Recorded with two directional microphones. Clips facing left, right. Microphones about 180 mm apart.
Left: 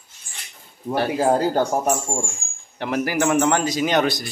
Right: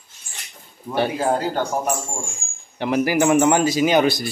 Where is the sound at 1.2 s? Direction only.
40° left (ahead or behind).